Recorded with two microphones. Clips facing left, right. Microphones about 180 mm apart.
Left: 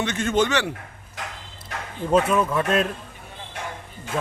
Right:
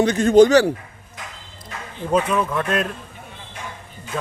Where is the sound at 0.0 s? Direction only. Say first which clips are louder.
Right 10 dB; 35° right (ahead or behind).